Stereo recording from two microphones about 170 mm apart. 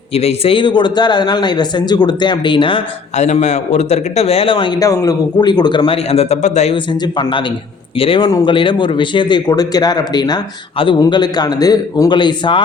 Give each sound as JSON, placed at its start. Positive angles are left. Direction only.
{"t": 0.1, "sound": "speech", "side_deg": 35}
{"t": 3.2, "sound": "a man's voice", "side_deg": 45}
{"t": 6.7, "sound": "a man's voice", "side_deg": 25}